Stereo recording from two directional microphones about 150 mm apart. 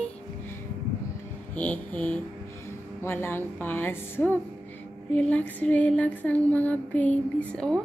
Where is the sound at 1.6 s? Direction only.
10° left (ahead or behind).